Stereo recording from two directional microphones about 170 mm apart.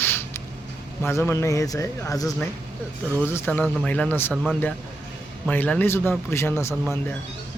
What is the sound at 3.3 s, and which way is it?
Speech, 10° left (ahead or behind).